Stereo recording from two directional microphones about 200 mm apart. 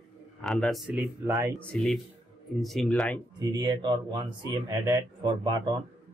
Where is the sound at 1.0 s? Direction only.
10° right (ahead or behind).